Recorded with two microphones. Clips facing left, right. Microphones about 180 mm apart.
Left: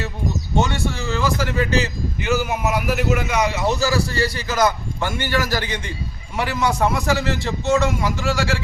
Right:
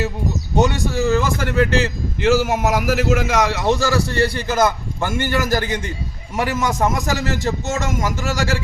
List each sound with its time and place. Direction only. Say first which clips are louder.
0.5 s a man's voice: right 5 dB; 45° right (ahead or behind); by 1.7 s 60° right (ahead or behind)
2.2 s a man's voice: right 5 dB; 90° right
3.9 s a man's voice: right 3 dB; 60° right (ahead or behind); by 8.6 s 40° right (ahead or behind)